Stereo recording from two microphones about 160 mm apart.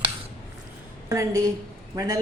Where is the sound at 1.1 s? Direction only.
20° right (ahead or behind).